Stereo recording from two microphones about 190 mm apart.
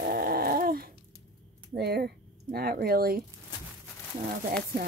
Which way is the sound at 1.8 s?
55° right (ahead or behind).